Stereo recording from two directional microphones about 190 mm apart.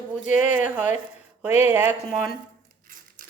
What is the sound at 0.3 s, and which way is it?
Speech, 10° right (ahead or behind).